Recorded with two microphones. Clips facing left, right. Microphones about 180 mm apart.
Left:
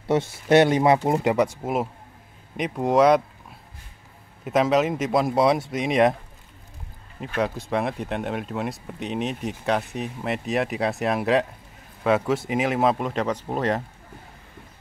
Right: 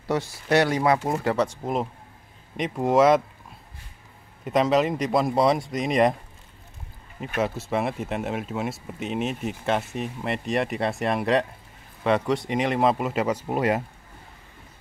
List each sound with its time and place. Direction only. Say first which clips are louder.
0.0 s speech: left 4 dB; 25° left (ahead or behind); by 3.2 s centre (ahead or behind)
4.5 s speech: left 1 dB; centre (ahead or behind)
7.2 s speech: left 1 dB; 5° right (ahead or behind)